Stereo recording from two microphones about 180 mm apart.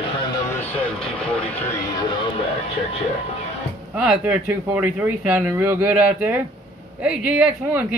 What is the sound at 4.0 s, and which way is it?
Speech, 5° right (ahead or behind).